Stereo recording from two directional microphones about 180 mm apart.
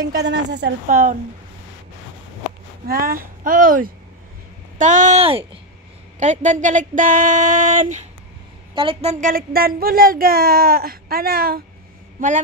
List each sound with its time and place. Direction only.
0.1 s speech: 70° right (ahead or behind)
0.8 s speech: 45° right (ahead or behind)
2.9 s speech: 55° right (ahead or behind)
8.7 s a woman's voice: 30° right (ahead or behind)
9.1 s speech: 50° right (ahead or behind)